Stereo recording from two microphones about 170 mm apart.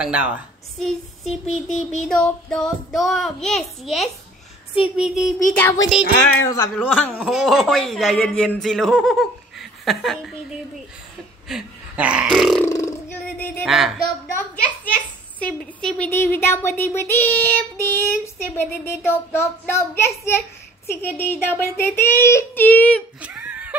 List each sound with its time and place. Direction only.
0.0 s speech: 5° right (ahead or behind)
1.4 s a sound: 45° left (ahead or behind)
2.0 s a man's voice: 5° left (ahead or behind)
5.5 s child singing: 10° left (ahead or behind)
5.9 s a man's voice: centre (ahead or behind)
6.3 s speech: 20° left (ahead or behind)
6.8 s child singing: 10° left (ahead or behind)
7.2 s a man's voice: centre (ahead or behind)
11.4 s a sound: 5° right (ahead or behind)
12.3 s a man's voice: centre (ahead or behind)
12.6 s a sound: 15° left (ahead or behind)
13.7 s a man's voice: centre (ahead or behind)
15.3 s child singing: 5° left (ahead or behind)
23.2 s a sound: 10° right (ahead or behind)